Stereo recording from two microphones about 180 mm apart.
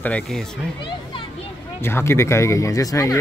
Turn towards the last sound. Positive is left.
turn(degrees=20)  # may be behind; listen again after turning